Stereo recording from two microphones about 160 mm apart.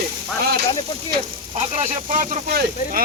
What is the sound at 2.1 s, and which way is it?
Speech, 55° right (ahead or behind).